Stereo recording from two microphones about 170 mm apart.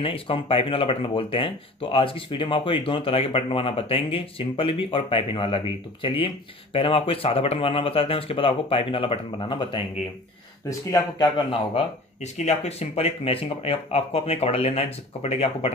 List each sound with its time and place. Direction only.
0.0 s speech: 35° left (ahead or behind)
10.9 s speech: 20° left (ahead or behind)
11.7 s speech: 40° left (ahead or behind)